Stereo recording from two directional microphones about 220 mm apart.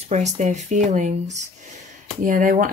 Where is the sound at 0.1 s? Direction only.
30° right (ahead or behind).